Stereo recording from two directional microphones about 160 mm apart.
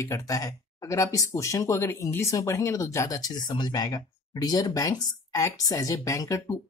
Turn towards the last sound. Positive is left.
turn(degrees=20)  # may be behind; listen again after turning